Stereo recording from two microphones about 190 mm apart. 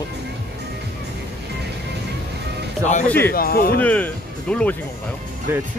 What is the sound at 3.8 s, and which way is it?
Speech, 10° left (ahead or behind).